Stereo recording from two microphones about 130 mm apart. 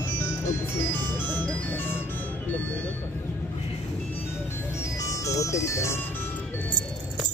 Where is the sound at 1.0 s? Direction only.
35° right (ahead or behind).